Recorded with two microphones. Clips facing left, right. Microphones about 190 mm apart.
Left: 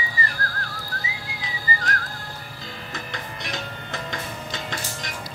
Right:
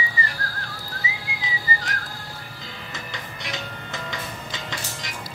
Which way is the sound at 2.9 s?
55° left (ahead or behind).